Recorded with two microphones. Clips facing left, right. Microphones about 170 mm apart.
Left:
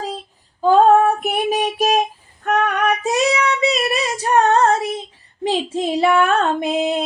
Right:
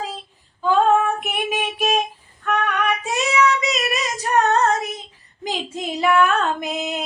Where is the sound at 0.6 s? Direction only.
35° left (ahead or behind).